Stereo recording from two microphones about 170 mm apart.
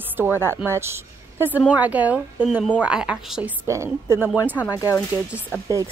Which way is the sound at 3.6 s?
15° right (ahead or behind).